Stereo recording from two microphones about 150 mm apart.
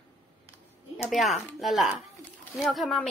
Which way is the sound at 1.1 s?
Centre (ahead or behind).